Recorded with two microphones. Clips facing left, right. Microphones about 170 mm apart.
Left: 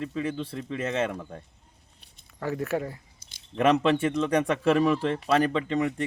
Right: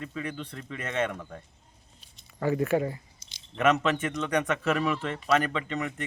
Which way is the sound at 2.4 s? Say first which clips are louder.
Right 3 dB; centre (ahead or behind).